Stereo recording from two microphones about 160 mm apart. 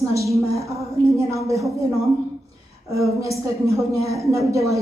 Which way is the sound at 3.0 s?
20° right (ahead or behind).